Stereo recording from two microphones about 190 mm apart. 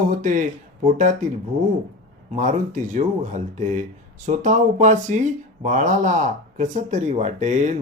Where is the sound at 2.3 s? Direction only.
40° right (ahead or behind).